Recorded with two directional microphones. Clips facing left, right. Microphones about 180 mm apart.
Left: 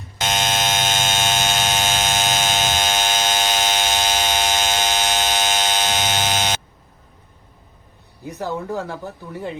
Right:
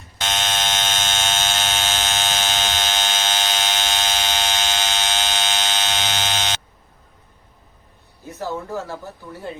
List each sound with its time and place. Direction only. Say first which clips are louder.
0.2 s fire alarm: left 3 dB; 15° left (ahead or behind)
5.3 s buzzer: left 3 dB; 15° left (ahead or behind)
8.2 s speech: left 2 dB; 15° left (ahead or behind)